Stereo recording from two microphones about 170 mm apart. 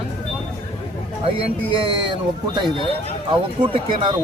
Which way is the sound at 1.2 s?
35° right (ahead or behind).